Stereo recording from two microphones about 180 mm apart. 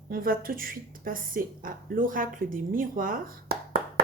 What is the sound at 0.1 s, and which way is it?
Speech, 55° right (ahead or behind).